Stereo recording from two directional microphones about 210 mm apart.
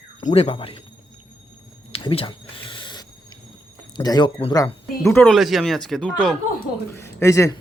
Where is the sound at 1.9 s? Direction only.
25° left (ahead or behind).